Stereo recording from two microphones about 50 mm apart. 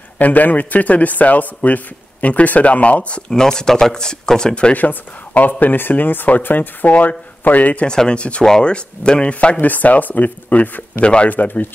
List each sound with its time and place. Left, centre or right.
0.2 s speech: left
3.3 s speech: centre
4.7 s speech: left
7.8 s speech: centre
11.3 s speech: left